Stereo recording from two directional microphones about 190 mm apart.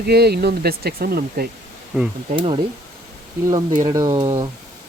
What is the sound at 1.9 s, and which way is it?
Speech, 5° right (ahead or behind).